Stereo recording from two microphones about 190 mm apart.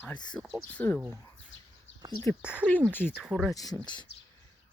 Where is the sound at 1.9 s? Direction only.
70° left (ahead or behind).